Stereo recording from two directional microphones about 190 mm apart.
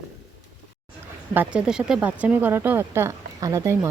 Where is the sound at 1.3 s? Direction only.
5° right (ahead or behind).